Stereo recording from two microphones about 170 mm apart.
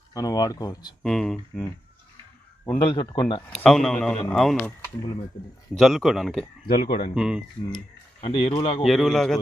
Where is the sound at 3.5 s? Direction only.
Centre (ahead or behind).